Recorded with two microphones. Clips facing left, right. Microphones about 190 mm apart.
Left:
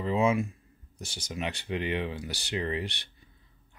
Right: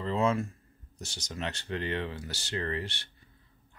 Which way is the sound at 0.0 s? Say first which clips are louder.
Left 2 dB; 10° left (ahead or behind).